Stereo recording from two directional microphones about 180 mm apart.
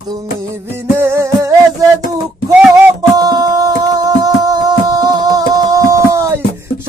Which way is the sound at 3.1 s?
20° right (ahead or behind).